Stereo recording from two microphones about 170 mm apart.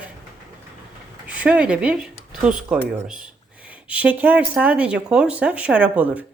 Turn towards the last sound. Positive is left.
turn(degrees=-10)  # may be behind; listen again after turning